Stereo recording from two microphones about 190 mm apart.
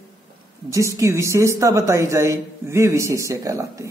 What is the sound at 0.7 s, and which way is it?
Speech, 15° right (ahead or behind).